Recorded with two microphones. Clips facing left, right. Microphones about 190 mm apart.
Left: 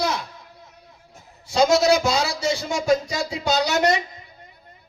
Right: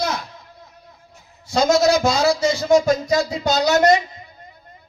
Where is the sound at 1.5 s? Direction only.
45° right (ahead or behind).